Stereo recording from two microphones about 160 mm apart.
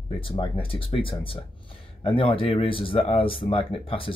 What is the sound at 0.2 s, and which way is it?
Speech, 35° left (ahead or behind).